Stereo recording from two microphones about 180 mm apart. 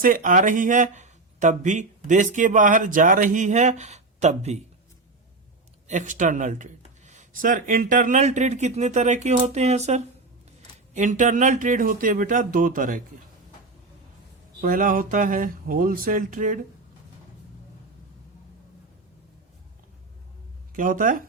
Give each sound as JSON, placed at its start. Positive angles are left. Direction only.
{"t": 0.0, "sound": "speech", "side_deg": -50}
{"t": 5.9, "sound": "speech", "side_deg": -45}
{"t": 14.6, "sound": "speech", "side_deg": -50}
{"t": 20.7, "sound": "speech", "side_deg": -50}